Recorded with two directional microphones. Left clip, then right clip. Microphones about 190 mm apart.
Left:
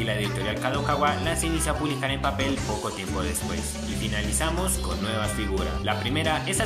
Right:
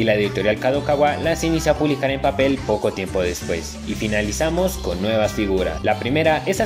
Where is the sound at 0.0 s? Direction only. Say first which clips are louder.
Right 10 dB; 45° right (ahead or behind).